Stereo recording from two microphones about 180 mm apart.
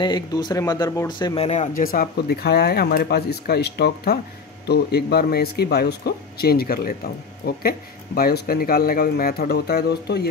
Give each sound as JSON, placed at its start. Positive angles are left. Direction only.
{"t": 0.0, "sound": "speech", "side_deg": 25}